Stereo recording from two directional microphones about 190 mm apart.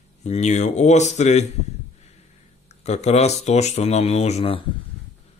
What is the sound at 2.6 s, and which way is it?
Speech, 35° left (ahead or behind).